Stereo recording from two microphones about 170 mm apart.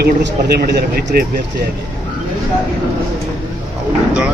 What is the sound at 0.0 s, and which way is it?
Speech, 70° right (ahead or behind).